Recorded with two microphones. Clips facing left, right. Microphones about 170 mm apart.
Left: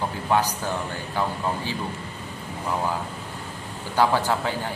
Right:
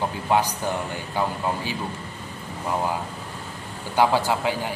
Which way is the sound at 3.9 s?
15° right (ahead or behind).